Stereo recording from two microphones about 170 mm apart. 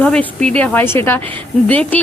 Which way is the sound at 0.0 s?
5° left (ahead or behind).